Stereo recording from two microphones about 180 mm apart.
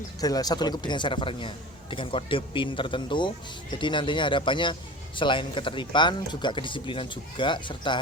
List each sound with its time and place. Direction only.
0.2 s speech: 20° left (ahead or behind)